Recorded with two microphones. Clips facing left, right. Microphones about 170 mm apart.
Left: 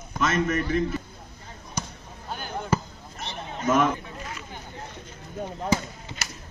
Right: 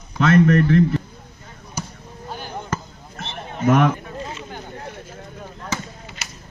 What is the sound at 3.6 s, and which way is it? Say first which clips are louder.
Speech: right 5 dB; 65° right (ahead or behind).